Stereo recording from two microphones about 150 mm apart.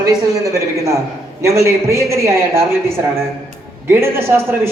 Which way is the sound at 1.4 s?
20° right (ahead or behind).